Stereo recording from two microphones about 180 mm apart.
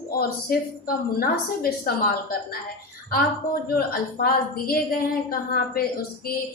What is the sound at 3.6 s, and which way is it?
Speech, 55° left (ahead or behind).